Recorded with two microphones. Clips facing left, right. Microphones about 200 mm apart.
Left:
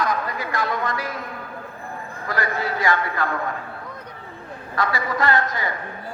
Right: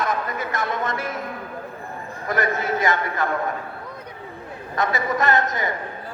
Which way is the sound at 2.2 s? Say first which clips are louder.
Right 2 dB; 20° right (ahead or behind).